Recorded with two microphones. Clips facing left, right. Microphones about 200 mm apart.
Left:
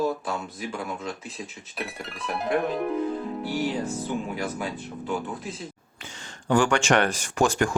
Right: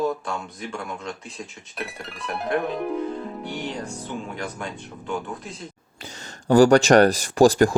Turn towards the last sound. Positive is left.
turn(degrees=-35)  # may be behind; listen again after turning